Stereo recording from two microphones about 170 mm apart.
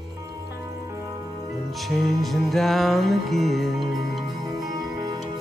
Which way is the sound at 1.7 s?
Centre (ahead or behind).